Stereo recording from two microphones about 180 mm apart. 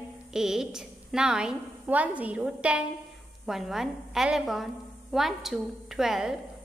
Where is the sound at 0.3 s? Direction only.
5° right (ahead or behind).